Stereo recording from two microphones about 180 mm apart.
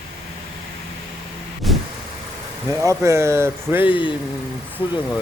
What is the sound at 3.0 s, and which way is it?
Speech, 15° right (ahead or behind).